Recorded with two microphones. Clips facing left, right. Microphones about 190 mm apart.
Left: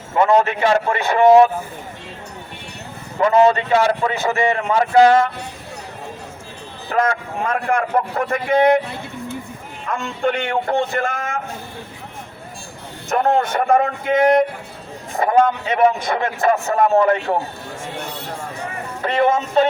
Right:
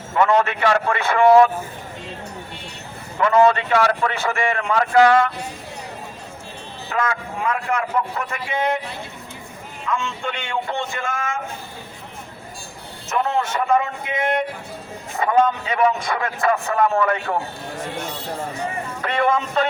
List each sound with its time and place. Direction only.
0.7 s a man's voice: 30° left (ahead or behind)
1.2 s a man's voice: 20° left (ahead or behind)
3.2 s a man's voice: 25° left (ahead or behind)
6.9 s a man's voice: 45° left (ahead or behind)
9.9 s a man's voice: 60° left (ahead or behind)
13.1 s a man's voice: 55° left (ahead or behind); by 16.7 s 25° left (ahead or behind)
16.7 s a man's voice: 40° left (ahead or behind)
17.0 s a man's voice: 25° left (ahead or behind)
19.0 s a man's voice: 25° left (ahead or behind)